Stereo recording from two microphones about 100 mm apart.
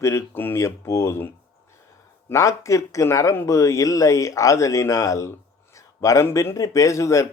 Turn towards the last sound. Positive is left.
turn(degrees=30)  # may be behind; listen again after turning